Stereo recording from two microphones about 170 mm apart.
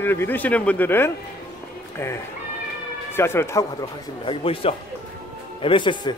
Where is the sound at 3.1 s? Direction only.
15° left (ahead or behind).